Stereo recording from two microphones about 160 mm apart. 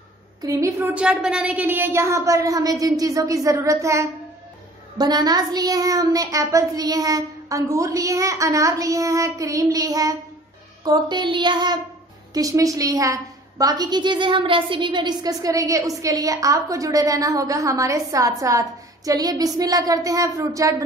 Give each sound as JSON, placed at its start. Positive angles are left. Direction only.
{"t": 0.4, "sound": "a woman's voice", "side_deg": -20}
{"t": 0.9, "sound": "a woman's voice", "side_deg": -5}